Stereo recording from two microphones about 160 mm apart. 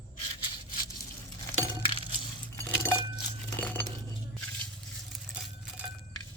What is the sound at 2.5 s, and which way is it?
Chink, 15° left (ahead or behind).